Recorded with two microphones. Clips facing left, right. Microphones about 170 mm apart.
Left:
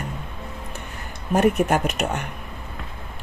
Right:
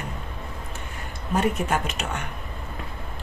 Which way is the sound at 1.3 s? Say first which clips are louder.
Left 5 dB; 55° left (ahead or behind).